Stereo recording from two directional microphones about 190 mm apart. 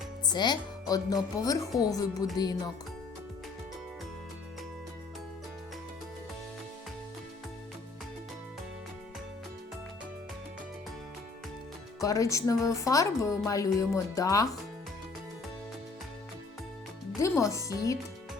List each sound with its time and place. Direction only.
0.3 s speech: 25° left (ahead or behind)
12.0 s speech: 15° left (ahead or behind)
17.2 s music: 15° left (ahead or behind)
17.5 s speech: 15° left (ahead or behind)